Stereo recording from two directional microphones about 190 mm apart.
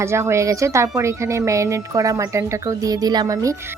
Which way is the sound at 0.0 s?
15° right (ahead or behind).